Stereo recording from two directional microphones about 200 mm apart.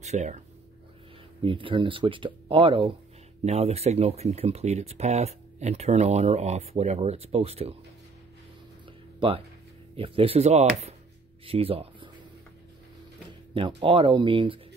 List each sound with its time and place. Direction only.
0.0 s speech: 35° right (ahead or behind)
1.4 s speech: 25° right (ahead or behind)
9.9 s speech: 30° right (ahead or behind)
13.6 s speech: 30° right (ahead or behind)